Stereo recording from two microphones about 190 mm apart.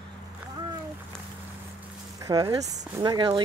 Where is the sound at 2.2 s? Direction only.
20° right (ahead or behind).